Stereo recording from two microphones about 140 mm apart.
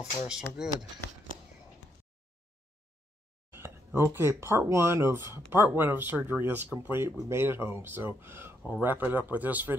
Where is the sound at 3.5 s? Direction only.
15° right (ahead or behind).